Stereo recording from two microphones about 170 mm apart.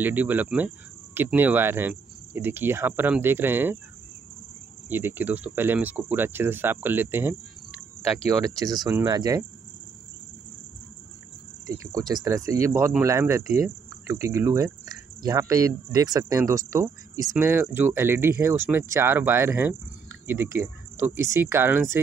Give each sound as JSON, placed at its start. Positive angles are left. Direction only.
{"t": 0.0, "sound": "speech", "side_deg": -10}
{"t": 4.8, "sound": "speech", "side_deg": -10}
{"t": 8.5, "sound": "speech", "side_deg": -20}
{"t": 11.6, "sound": "speech", "side_deg": -20}